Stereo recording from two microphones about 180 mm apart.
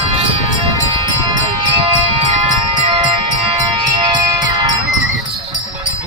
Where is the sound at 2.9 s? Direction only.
25° right (ahead or behind).